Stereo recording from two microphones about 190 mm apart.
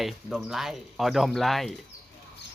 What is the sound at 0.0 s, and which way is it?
Speech, centre (ahead or behind).